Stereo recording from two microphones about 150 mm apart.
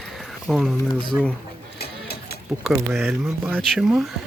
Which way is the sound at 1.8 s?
90° left.